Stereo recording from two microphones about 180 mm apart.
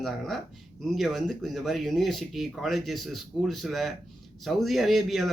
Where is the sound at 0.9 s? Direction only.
Centre (ahead or behind).